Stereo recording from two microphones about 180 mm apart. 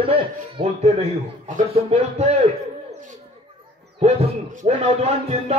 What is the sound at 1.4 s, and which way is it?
Speech, 40° right (ahead or behind).